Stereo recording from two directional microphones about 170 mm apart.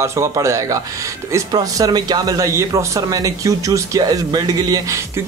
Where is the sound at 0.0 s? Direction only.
15° right (ahead or behind).